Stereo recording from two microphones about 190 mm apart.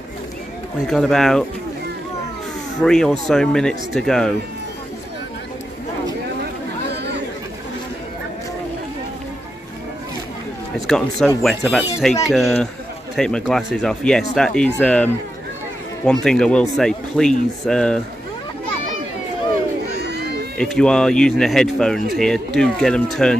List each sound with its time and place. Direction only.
0.8 s speech: 5° left (ahead or behind)
2.8 s speech: 5° left (ahead or behind)
10.9 s speech: 5° left (ahead or behind)
16.1 s speech: 5° left (ahead or behind)
19.9 s crowd: 60° right (ahead or behind)
20.5 s speech: 5° left (ahead or behind)